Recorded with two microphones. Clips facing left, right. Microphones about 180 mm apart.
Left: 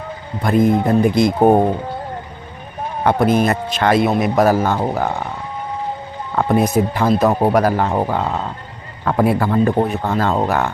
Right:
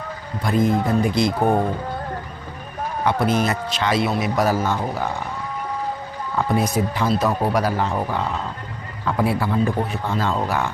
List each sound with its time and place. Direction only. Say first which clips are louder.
0.4 s a man's voice: left 5 dB; 55° left (ahead or behind)
3.0 s a man's voice: left 5 dB; 55° left (ahead or behind)
6.3 s a man's voice: left 5 dB; 55° left (ahead or behind)